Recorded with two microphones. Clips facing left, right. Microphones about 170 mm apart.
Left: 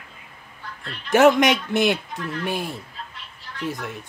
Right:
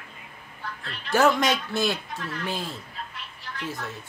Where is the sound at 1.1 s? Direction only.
20° left (ahead or behind).